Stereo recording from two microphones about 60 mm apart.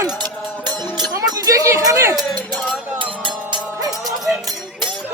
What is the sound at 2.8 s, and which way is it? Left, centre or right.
Music, right.